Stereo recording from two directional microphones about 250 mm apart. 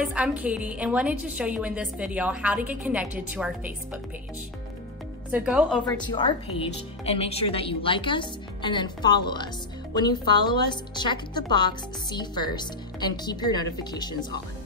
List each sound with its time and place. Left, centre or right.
0.0 s a woman's voice: centre
5.3 s a woman's voice: centre
5.9 s a woman's voice: centre